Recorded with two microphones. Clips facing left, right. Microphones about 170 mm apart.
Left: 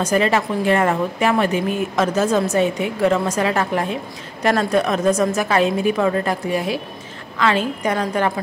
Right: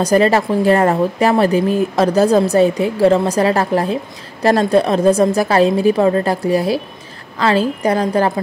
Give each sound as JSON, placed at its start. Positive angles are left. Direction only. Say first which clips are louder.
{"t": 0.0, "sound": "speech", "louder": "right 5 dB", "side_deg": -35}